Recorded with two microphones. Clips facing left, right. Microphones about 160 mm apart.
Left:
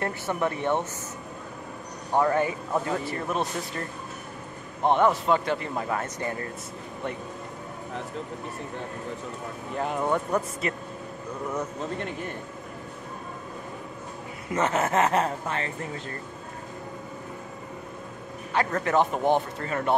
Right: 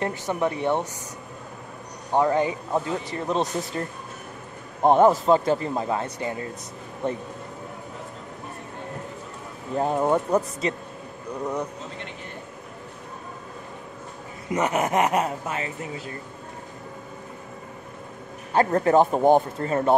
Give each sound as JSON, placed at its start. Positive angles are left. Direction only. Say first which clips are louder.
{"t": 0.0, "sound": "speech", "louder": "right 2 dB", "side_deg": -15}
{"t": 2.1, "sound": "a man's voice", "louder": "right 2 dB", "side_deg": -20}
{"t": 4.8, "sound": "speech", "louder": "right 5 dB", "side_deg": -40}
{"t": 5.8, "sound": "a man's voice", "louder": "right 3 dB", "side_deg": -20}
{"t": 9.8, "sound": "a man's voice", "louder": "right 5 dB", "side_deg": -25}
{"t": 14.5, "sound": "speech", "louder": "right 2 dB", "side_deg": -15}
{"t": 18.5, "sound": "speech", "louder": "right 6 dB", "side_deg": -35}